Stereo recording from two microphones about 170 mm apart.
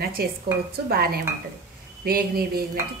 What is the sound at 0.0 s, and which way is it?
A woman's voice, 65° right (ahead or behind).